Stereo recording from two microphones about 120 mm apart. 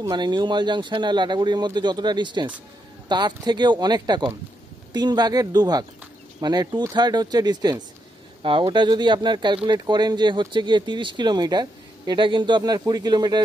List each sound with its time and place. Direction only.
0.0 s speech: 35° right (ahead or behind)
8.4 s speech: 45° right (ahead or behind)